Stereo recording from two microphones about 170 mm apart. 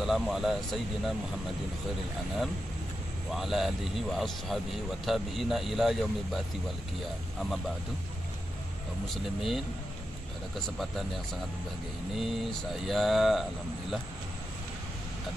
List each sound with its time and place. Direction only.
0.0 s speech: centre (ahead or behind)
3.3 s speech: centre (ahead or behind)
9.1 s speech: centre (ahead or behind)
12.2 s speech: centre (ahead or behind)